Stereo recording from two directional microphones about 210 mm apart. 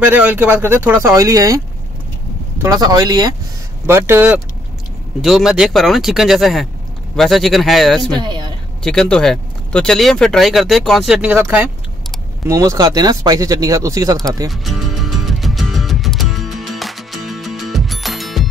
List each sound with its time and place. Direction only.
0.0 s speech: 10° right (ahead or behind)
2.6 s speech: 20° right (ahead or behind); by 8.0 s centre (ahead or behind)
8.1 s speech: 20° right (ahead or behind)
8.8 s speech: 5° left (ahead or behind); by 14.5 s 15° right (ahead or behind)
14.9 s music: centre (ahead or behind)